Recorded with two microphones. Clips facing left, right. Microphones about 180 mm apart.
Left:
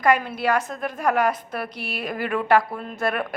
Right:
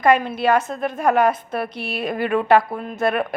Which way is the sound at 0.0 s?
25° right (ahead or behind).